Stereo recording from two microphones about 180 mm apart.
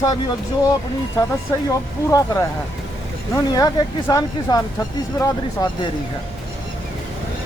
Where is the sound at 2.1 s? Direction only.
20° left (ahead or behind).